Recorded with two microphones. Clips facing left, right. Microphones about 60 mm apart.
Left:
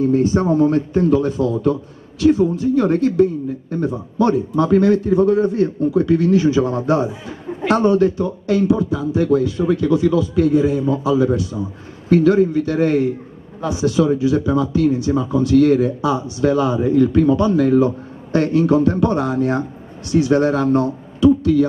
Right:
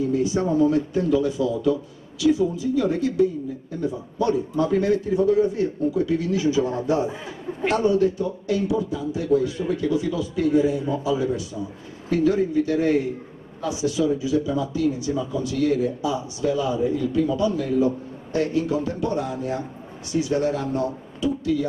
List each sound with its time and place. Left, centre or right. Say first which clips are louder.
0.0 s speech: left 6 dB; left